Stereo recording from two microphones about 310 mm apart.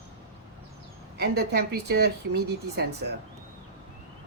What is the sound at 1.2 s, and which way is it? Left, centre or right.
A woman's voice, right.